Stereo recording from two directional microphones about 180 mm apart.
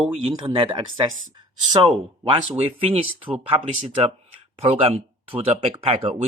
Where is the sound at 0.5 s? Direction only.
30° right (ahead or behind).